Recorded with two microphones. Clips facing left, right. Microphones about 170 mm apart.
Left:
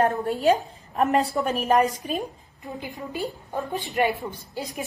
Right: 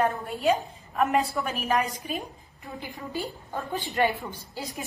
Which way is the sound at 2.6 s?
20° left (ahead or behind).